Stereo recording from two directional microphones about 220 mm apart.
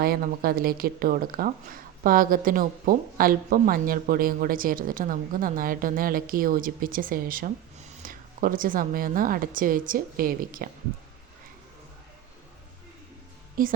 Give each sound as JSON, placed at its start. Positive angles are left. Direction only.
{"t": 0.0, "sound": "speech", "side_deg": -45}
{"t": 13.6, "sound": "speech", "side_deg": -40}